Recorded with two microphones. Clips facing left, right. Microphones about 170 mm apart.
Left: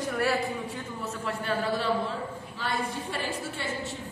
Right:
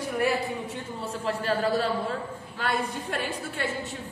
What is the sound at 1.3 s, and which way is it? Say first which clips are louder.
Speech: right 4 dB; 40° right (ahead or behind).